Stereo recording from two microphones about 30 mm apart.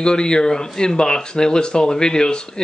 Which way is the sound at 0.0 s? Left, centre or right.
Left.